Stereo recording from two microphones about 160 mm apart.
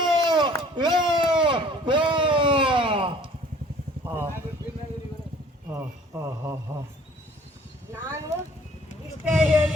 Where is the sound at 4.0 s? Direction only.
15° right (ahead or behind).